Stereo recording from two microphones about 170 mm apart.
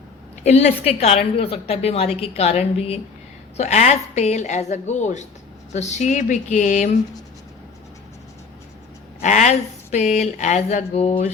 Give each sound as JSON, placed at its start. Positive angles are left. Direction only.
{"t": 0.4, "sound": "a woman's voice", "side_deg": 40}
{"t": 9.2, "sound": "speech", "side_deg": 45}